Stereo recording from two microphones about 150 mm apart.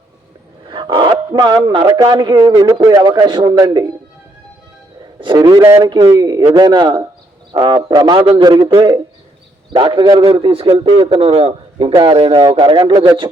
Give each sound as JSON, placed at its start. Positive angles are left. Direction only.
{"t": 0.7, "sound": "dog", "side_deg": -30}
{"t": 2.0, "sound": "a man's voice", "side_deg": -30}
{"t": 5.2, "sound": "a man's voice", "side_deg": -30}
{"t": 5.6, "sound": "a man's voice", "side_deg": -15}